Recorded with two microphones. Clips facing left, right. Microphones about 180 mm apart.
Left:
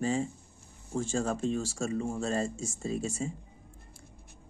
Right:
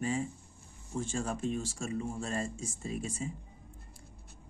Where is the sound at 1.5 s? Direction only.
90° left.